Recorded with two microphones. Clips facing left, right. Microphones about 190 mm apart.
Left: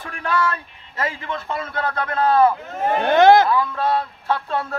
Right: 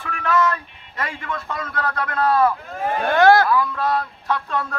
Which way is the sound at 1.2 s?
30° left (ahead or behind).